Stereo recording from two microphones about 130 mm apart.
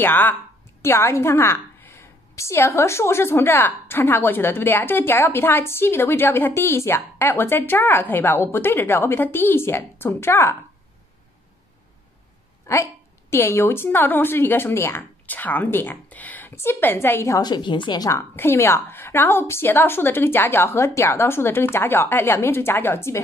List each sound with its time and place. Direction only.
0.0 s a woman's voice: 15° left (ahead or behind)
12.7 s a woman's voice: 20° left (ahead or behind)
18.3 s a woman's voice: 15° left (ahead or behind)